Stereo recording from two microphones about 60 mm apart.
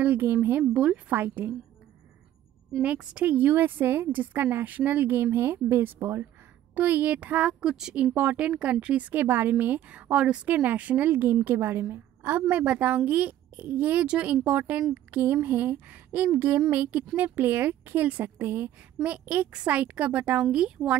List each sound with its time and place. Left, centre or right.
0.0 s a woman's voice: right
0.7 s speech: centre
1.1 s a woman's voice: right
2.8 s a woman's voice: centre
5.1 s a woman's voice: right
6.7 s a woman's voice: right
7.6 s speech: centre
7.9 s a woman's voice: right
9.1 s a woman's voice: right
12.2 s a woman's voice: right
14.0 s a woman's voice: centre
16.3 s a woman's voice: right
16.7 s a woman's voice: right
19.0 s a woman's voice: right